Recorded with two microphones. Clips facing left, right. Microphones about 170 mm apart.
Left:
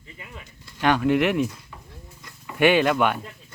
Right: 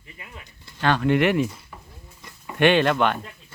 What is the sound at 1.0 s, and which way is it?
Speech, centre (ahead or behind).